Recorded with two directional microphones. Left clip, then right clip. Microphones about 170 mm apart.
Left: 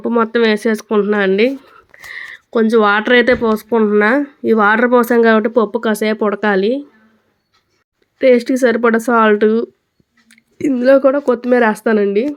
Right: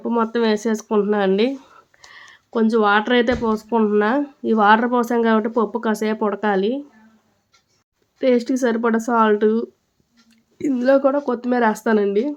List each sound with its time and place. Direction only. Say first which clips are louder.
0.1 s speech: left 6 dB; 15° left (ahead or behind)
8.2 s speech: left 7 dB; 15° left (ahead or behind)